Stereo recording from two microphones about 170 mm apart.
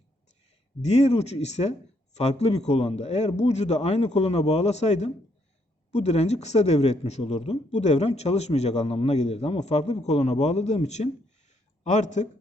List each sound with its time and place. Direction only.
0.8 s speech: 40° left (ahead or behind)